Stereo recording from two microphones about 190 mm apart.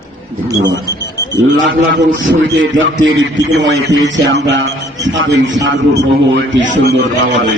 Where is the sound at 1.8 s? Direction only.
80° right.